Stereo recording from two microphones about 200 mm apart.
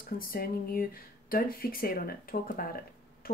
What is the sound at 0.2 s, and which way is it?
Speech, 45° left (ahead or behind).